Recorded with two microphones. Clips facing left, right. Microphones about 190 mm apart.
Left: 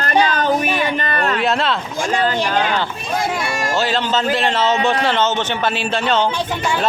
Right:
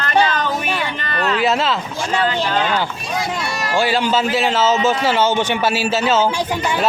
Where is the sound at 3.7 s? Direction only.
10° right (ahead or behind).